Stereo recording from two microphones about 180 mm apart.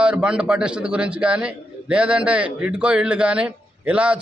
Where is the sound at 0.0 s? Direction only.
5° right (ahead or behind).